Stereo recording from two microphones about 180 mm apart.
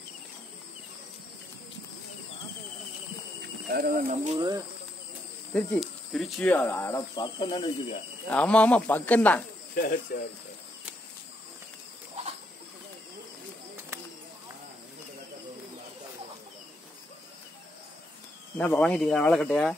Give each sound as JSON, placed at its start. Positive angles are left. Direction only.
{"t": 3.7, "sound": "speech", "side_deg": -55}
{"t": 5.5, "sound": "speech", "side_deg": 5}
{"t": 8.3, "sound": "speech", "side_deg": 5}
{"t": 9.8, "sound": "speech", "side_deg": 55}
{"t": 18.6, "sound": "speech", "side_deg": 5}